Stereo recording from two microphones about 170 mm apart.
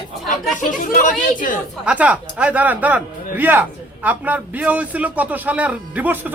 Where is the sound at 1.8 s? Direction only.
5° right (ahead or behind).